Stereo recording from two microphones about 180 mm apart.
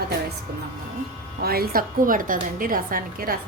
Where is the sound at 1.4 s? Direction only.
60° right (ahead or behind).